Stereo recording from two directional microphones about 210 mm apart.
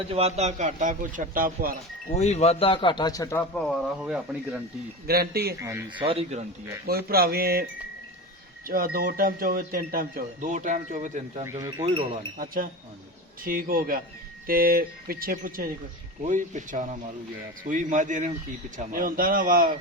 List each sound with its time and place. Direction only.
0.1 s a man's voice: 30° right (ahead or behind)
2.1 s a man's voice: 30° left (ahead or behind); by 4.6 s 5° right (ahead or behind)
5.0 s speech: 45° right (ahead or behind)
6.0 s speech: 25° right (ahead or behind)
6.8 s speech: 45° right (ahead or behind)
8.6 s speech: 45° right (ahead or behind)
11.6 s speech: 15° right (ahead or behind)
13.4 s a man's voice: 45° right (ahead or behind)